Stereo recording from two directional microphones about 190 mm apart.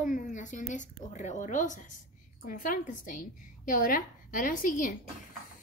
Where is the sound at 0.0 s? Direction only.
45° left (ahead or behind).